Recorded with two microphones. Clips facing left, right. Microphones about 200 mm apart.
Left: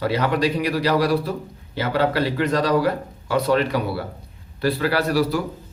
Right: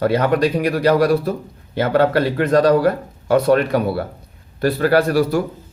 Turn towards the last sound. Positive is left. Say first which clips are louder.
# right 5 dB
turn(degrees=-50)  # may be behind; listen again after turning